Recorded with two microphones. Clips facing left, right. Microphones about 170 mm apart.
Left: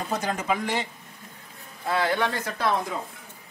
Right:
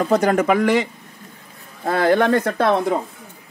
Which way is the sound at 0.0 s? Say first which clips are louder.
Right 12 dB; 70° right (ahead or behind).